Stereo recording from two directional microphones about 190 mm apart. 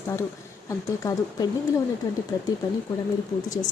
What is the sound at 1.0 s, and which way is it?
A woman's voice, 20° left (ahead or behind).